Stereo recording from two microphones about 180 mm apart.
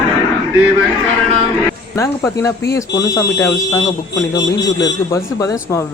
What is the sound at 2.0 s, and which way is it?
Speech, 15° left (ahead or behind).